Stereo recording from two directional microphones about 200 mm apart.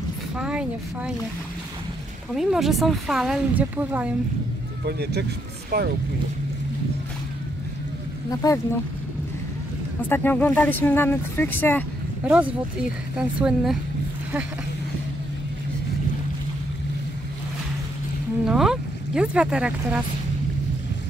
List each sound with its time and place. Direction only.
0.4 s speech: 5° right (ahead or behind)
2.3 s speech: centre (ahead or behind)
4.8 s speech: 55° right (ahead or behind)
8.3 s speech: 15° left (ahead or behind)
10.0 s speech: 10° left (ahead or behind)
12.3 s speech: 5° right (ahead or behind)
18.4 s speech: 5° right (ahead or behind)